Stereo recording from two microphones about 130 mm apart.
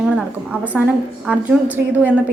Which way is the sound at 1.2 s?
10° right (ahead or behind).